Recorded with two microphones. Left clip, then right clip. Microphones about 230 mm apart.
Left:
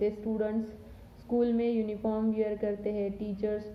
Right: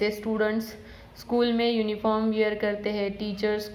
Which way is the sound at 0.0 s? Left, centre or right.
Centre.